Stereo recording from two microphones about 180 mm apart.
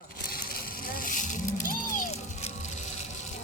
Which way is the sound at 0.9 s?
50° left (ahead or behind).